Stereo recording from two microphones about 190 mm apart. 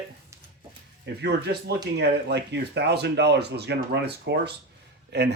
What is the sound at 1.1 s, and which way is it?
Speech, 60° right (ahead or behind).